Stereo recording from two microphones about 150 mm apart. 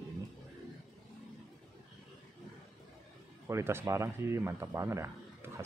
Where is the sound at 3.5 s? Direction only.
15° right (ahead or behind).